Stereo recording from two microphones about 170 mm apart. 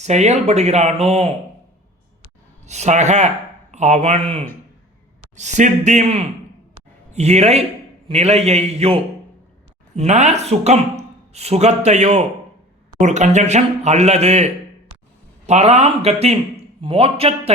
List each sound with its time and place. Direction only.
0.0 s a man's voice: 40° right (ahead or behind)
2.6 s a man's voice: 40° right (ahead or behind)